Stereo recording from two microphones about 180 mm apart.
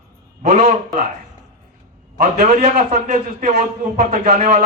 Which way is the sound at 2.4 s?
40° right (ahead or behind).